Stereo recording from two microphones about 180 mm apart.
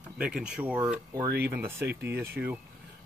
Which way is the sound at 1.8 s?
65° right (ahead or behind).